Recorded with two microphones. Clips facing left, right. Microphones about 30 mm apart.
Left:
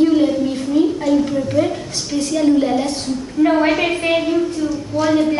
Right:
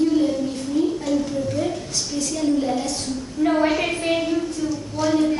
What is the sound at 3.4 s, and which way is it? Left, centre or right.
A woman's voice, left.